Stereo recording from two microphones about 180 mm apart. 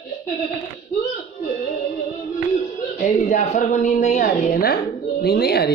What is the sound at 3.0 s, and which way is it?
A woman's voice, 45° left (ahead or behind).